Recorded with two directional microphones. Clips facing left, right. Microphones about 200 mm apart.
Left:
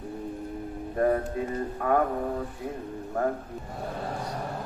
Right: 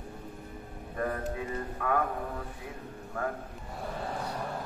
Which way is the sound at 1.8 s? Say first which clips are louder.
Left 6 dB; 40° left (ahead or behind).